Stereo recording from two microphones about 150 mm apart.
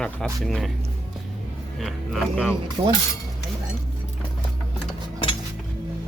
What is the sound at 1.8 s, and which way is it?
Speech, centre (ahead or behind).